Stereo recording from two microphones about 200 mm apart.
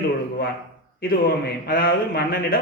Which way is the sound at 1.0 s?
50° left (ahead or behind).